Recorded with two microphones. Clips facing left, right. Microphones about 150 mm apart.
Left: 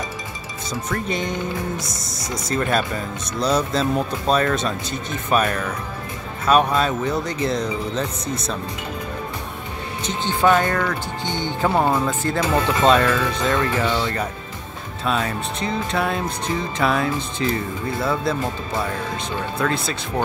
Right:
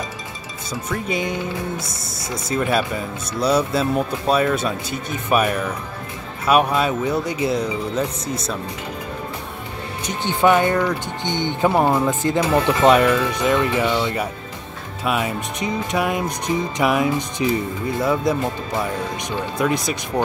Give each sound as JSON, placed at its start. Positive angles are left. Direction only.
{"t": 0.8, "sound": "speech", "side_deg": -5}
{"t": 10.0, "sound": "speech", "side_deg": -15}